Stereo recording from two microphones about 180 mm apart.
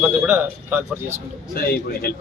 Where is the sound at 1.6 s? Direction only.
60° left (ahead or behind).